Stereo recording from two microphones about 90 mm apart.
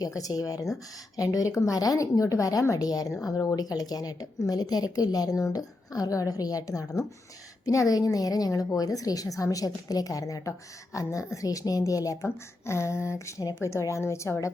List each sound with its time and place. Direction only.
0.0 s a woman's voice: 40° left (ahead or behind)